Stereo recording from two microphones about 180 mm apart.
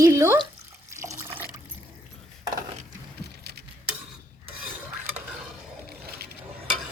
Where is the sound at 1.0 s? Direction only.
15° right (ahead or behind).